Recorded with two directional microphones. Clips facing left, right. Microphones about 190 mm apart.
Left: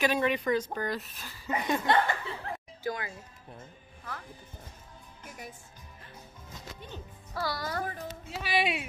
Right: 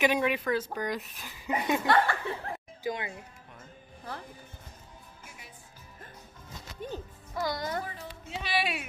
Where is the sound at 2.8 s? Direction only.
20° right (ahead or behind).